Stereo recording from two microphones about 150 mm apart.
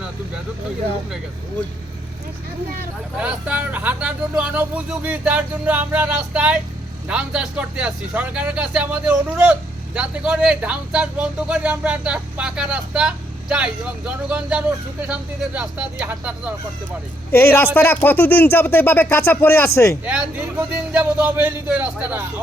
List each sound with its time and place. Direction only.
3.2 s speech: 10° right (ahead or behind)
17.3 s speech: 15° left (ahead or behind)
20.1 s speech: 10° right (ahead or behind)